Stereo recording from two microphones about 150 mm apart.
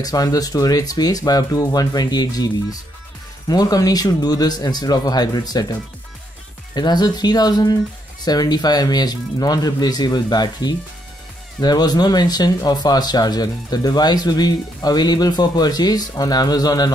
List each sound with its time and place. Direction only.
0.0 s speech: 25° left (ahead or behind)